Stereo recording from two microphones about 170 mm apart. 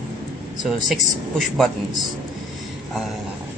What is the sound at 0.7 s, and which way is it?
Speech, centre (ahead or behind).